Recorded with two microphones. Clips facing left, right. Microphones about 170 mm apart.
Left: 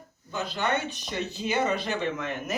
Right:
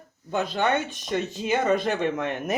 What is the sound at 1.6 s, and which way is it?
Speech, 50° right (ahead or behind).